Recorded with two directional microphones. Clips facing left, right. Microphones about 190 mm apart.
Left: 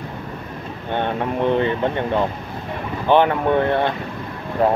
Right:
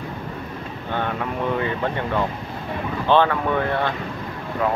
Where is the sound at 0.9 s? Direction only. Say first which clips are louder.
Left 4 dB; 25° left (ahead or behind).